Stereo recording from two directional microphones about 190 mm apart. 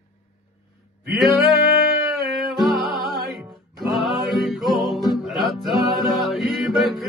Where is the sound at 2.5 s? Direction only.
Centre (ahead or behind).